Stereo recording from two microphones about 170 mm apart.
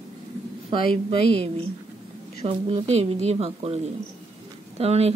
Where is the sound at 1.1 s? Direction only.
65° left (ahead or behind).